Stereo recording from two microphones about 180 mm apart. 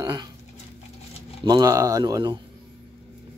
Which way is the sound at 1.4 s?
20° right (ahead or behind).